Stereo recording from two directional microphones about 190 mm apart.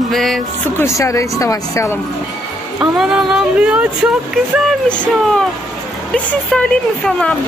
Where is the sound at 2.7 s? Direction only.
5° right (ahead or behind).